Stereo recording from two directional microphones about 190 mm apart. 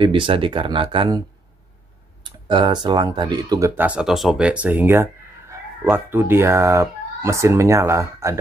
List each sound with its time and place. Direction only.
0.0 s speech: 25° right (ahead or behind)
2.2 s speech: 25° right (ahead or behind)